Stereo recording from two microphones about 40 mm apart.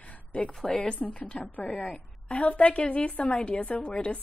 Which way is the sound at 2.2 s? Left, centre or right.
Left.